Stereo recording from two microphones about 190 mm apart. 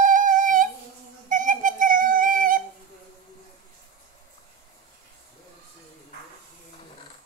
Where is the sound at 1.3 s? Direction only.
45° right (ahead or behind).